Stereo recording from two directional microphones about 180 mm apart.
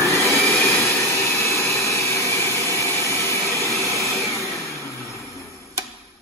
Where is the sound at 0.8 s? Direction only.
15° left (ahead or behind).